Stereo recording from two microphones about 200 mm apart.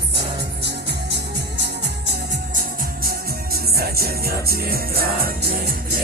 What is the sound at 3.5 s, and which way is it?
Music, 50° right (ahead or behind).